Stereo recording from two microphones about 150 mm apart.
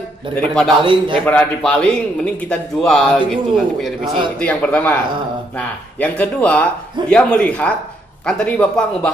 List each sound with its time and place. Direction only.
0.3 s a man's voice: 5° left (ahead or behind)
0.8 s a man's voice: 35° right (ahead or behind)
1.2 s a man's voice: 5° left (ahead or behind)
5.9 s a man's voice: 10° left (ahead or behind)